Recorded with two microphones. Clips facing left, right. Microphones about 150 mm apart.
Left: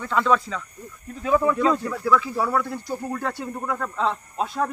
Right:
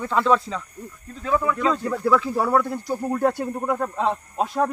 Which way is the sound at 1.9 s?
30° right (ahead or behind).